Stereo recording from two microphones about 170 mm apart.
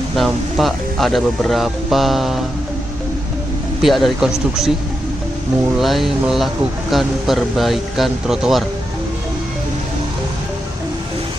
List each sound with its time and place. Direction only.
0.1 s speech: centre (ahead or behind)
3.8 s speech: centre (ahead or behind)
5.8 s speech: centre (ahead or behind)